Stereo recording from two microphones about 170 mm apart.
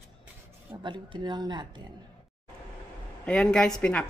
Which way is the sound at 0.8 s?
25° right (ahead or behind).